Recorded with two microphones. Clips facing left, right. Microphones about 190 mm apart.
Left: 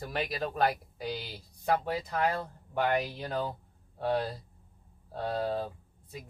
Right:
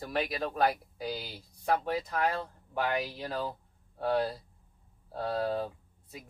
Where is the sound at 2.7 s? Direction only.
Centre (ahead or behind).